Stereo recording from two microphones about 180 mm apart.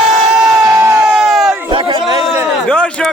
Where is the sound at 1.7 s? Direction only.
30° right (ahead or behind).